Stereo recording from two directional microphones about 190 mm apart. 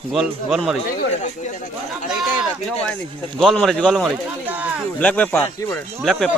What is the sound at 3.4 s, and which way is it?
Speech, centre (ahead or behind).